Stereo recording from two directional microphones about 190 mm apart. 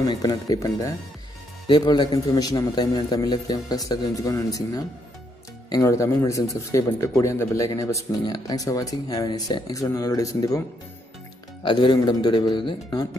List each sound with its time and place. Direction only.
0.0 s a man's voice: 20° left (ahead or behind)
11.6 s a man's voice: 25° left (ahead or behind)